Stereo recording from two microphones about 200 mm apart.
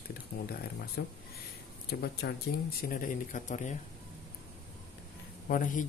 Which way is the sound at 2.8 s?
45° left (ahead or behind).